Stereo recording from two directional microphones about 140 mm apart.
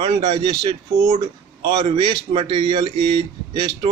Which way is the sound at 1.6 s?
35° right (ahead or behind).